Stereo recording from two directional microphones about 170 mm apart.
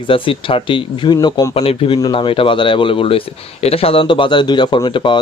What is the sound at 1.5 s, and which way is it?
Speech, 35° left (ahead or behind).